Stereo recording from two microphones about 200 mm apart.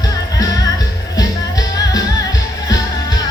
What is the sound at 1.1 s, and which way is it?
Music, 20° left (ahead or behind).